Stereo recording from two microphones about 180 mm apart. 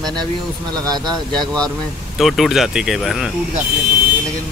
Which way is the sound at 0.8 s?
20° right (ahead or behind).